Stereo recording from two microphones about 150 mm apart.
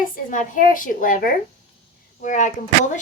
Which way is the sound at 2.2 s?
55° left (ahead or behind).